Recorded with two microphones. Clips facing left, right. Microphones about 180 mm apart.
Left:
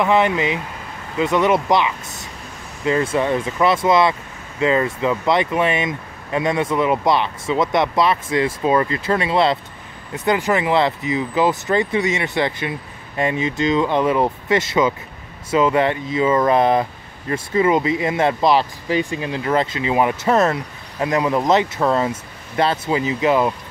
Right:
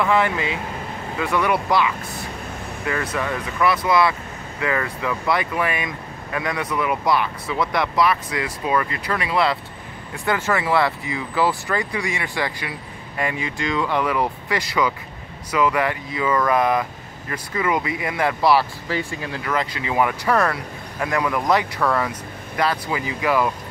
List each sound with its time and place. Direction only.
0.0 s speech: 20° left (ahead or behind)